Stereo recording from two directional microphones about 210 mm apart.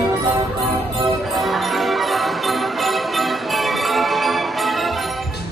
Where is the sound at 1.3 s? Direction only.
Centre (ahead or behind).